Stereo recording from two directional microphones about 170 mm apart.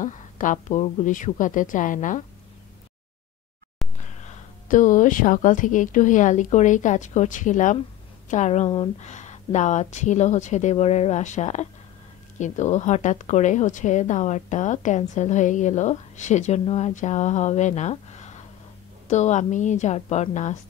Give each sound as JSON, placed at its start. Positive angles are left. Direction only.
{"t": 0.0, "sound": "speech", "side_deg": 45}
{"t": 4.0, "sound": "speech", "side_deg": 45}